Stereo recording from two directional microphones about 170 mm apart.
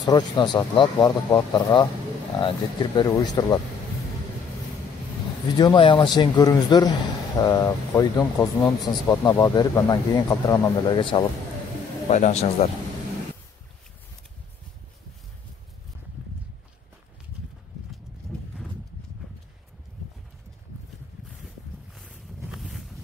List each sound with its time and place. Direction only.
0.0 s speech: 25° left (ahead or behind)
5.6 s speech: 25° left (ahead or behind)
12.1 s speech: 45° left (ahead or behind)
22.1 s a sound: centre (ahead or behind)